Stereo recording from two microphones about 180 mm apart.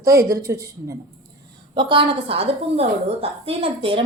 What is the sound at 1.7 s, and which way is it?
A woman's voice, 25° right (ahead or behind).